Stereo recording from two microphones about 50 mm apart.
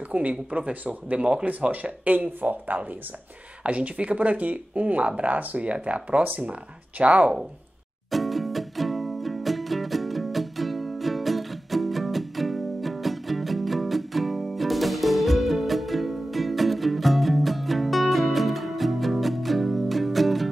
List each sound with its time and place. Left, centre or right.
0.1 s speech: right
3.6 s speech: right
8.1 s music: centre